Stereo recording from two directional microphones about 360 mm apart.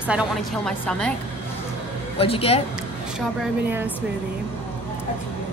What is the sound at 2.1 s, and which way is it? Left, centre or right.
Speech, centre.